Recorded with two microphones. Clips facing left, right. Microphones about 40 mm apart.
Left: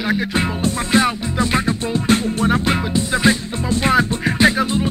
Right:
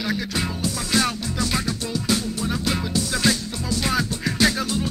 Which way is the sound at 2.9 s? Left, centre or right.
Left.